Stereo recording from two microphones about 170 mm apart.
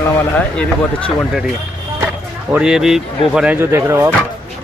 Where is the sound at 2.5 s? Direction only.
5° right (ahead or behind).